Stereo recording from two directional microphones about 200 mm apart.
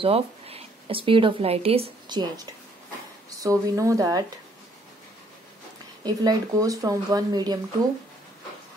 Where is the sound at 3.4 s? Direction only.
15° right (ahead or behind).